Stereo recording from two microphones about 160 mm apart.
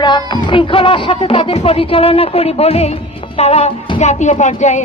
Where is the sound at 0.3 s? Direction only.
30° left (ahead or behind).